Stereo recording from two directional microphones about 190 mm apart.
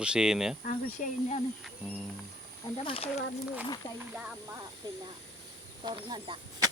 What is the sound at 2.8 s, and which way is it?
Speech, 30° left (ahead or behind).